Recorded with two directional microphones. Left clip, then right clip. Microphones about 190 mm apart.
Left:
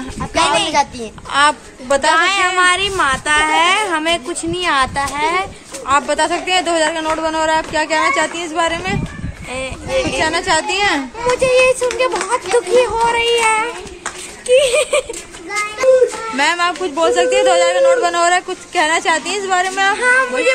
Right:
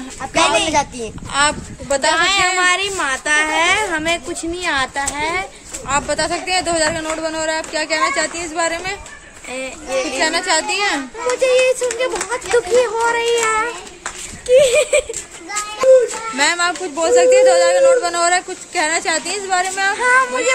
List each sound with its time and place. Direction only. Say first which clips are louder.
0.4 s a woman's voice: left 1 dB; 15° right (ahead or behind)
2.1 s speech: left 2 dB; 20° right (ahead or behind)
2.4 s a woman's voice: left 2 dB; 10° right (ahead or behind)
2.7 s a woman's voice: left 3 dB; 20° right (ahead or behind)
9.5 s speech: left 2 dB; 20° right (ahead or behind)
10.1 s speech: even; 5° right (ahead or behind)
11.3 s speech: left 2 dB; 20° right (ahead or behind)
16.3 s speech: left 1 dB; 5° right (ahead or behind)
20.0 s speech: left 1 dB; 30° right (ahead or behind)